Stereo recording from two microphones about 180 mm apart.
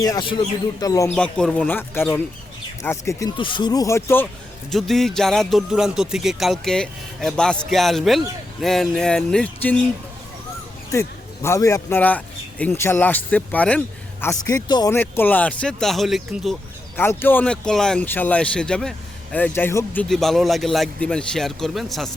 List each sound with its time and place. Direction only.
0.0 s speech: 20° left (ahead or behind)
1.1 s a man's voice: 5° left (ahead or behind)
4.7 s speech: centre (ahead or behind)
11.4 s a man's voice: 15° left (ahead or behind)
14.4 s speech: 20° left (ahead or behind); by 16.6 s centre (ahead or behind)
17.0 s speech: 10° left (ahead or behind)